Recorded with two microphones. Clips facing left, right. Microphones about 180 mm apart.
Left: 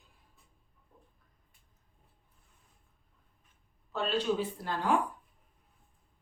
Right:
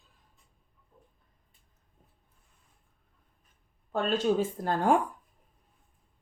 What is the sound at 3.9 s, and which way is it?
Speech, 50° right (ahead or behind).